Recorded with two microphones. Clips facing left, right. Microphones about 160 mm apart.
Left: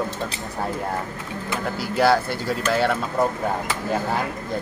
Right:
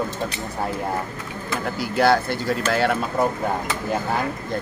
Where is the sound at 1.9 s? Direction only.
5° left (ahead or behind).